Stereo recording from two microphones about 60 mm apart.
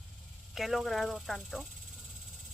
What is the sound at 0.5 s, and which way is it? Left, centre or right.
Speech, centre.